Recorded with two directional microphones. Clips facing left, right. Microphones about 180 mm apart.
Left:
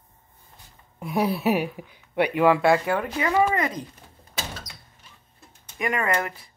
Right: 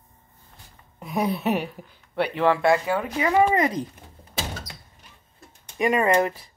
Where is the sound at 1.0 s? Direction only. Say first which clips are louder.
Left 1 dB; 5° left (ahead or behind).